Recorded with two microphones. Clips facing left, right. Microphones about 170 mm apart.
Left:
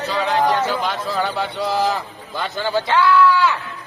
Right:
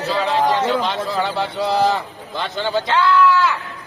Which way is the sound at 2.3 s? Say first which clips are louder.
Even; 20° right (ahead or behind).